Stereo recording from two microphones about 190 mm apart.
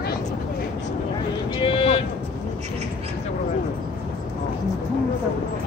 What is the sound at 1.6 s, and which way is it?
Music, 30° left (ahead or behind).